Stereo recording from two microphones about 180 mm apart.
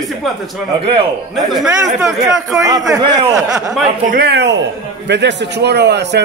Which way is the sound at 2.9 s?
20° right (ahead or behind).